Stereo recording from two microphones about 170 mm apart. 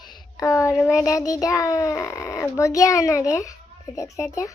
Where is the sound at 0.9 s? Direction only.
20° left (ahead or behind).